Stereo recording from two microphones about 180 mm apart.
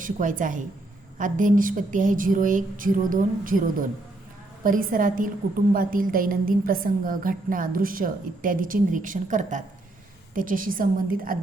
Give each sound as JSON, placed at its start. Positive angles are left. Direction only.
{"t": 0.0, "sound": "a woman's voice", "side_deg": -45}